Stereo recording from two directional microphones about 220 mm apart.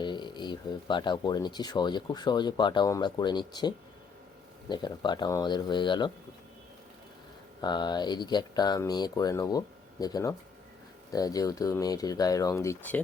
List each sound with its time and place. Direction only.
0.0 s speech: 20° left (ahead or behind)
7.6 s speech: 20° left (ahead or behind)